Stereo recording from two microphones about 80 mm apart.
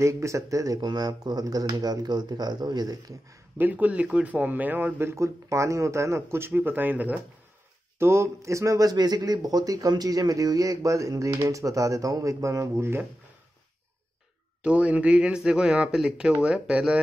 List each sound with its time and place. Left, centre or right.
0.0 s speech: right
0.8 s speech: right
3.5 s a man's voice: right
8.0 s speech: right
14.6 s speech: centre